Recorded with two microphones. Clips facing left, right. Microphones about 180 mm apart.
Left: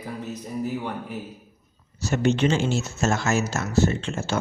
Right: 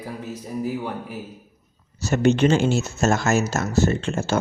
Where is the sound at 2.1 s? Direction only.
50° right (ahead or behind).